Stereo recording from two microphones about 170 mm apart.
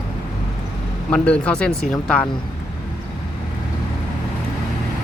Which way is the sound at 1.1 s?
5° left (ahead or behind).